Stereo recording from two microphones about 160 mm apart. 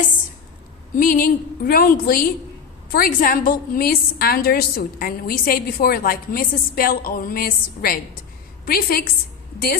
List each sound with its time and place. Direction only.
0.9 s a woman's voice: 60° left (ahead or behind)